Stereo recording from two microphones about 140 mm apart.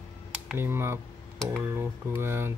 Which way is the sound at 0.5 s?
15° right (ahead or behind).